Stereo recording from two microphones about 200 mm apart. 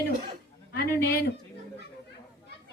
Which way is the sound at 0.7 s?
50° left (ahead or behind).